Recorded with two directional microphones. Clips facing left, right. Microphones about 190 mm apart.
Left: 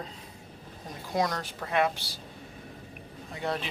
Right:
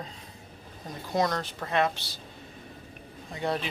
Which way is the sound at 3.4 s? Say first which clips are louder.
Right 2 dB; centre (ahead or behind).